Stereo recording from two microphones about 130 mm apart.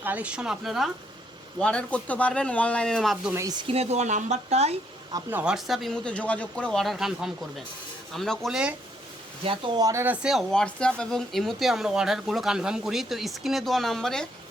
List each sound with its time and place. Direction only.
0.0 s speech: 10° right (ahead or behind)
3.6 s speech: 50° right (ahead or behind)
5.3 s speech: 10° right (ahead or behind)
9.4 s speech: 45° right (ahead or behind)
9.7 s speech: 25° right (ahead or behind)
10.2 s speech: centre (ahead or behind)